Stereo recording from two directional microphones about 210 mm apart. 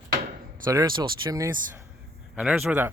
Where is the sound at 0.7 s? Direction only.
20° right (ahead or behind).